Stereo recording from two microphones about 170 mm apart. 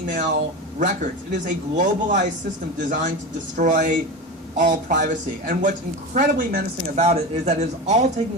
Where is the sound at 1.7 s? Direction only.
45° right (ahead or behind).